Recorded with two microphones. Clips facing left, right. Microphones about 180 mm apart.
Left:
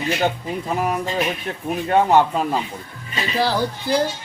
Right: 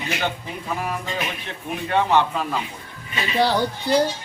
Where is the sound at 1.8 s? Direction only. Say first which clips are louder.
Left 4 dB; 40° left (ahead or behind).